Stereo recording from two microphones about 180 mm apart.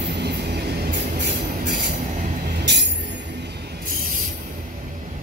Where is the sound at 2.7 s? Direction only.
75° right (ahead or behind).